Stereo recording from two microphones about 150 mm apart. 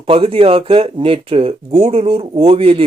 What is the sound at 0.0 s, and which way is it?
Speech, 40° right (ahead or behind).